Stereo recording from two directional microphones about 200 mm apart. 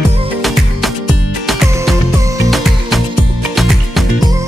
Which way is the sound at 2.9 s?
Centre (ahead or behind).